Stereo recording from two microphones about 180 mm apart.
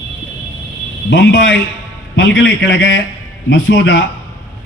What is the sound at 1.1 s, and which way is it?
A man's voice, 85° left.